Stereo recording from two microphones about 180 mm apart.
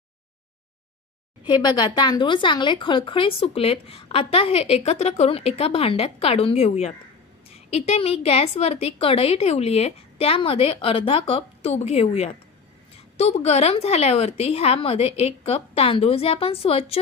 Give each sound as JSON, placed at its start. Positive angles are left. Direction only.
{"t": 1.4, "sound": "speech", "side_deg": 25}